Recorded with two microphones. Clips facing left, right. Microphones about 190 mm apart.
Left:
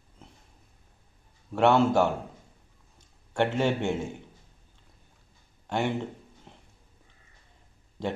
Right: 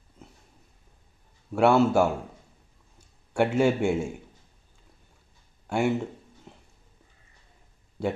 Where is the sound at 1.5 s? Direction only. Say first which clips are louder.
Right 1 dB; 5° right (ahead or behind).